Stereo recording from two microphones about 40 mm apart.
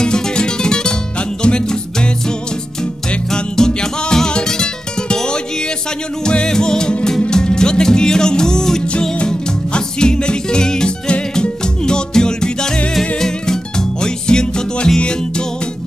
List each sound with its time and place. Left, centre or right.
0.0 s music: centre
3.3 s music: centre
9.1 s music: left